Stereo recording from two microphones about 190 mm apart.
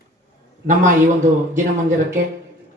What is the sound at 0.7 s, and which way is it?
Speech, 40° right (ahead or behind).